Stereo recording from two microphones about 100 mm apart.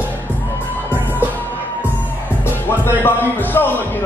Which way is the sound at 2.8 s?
20° left (ahead or behind).